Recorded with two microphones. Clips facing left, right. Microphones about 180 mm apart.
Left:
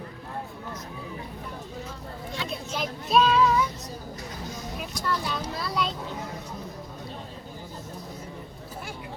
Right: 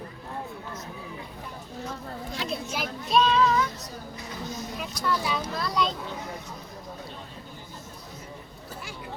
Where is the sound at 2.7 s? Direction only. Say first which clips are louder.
Left 2 dB; 5° left (ahead or behind).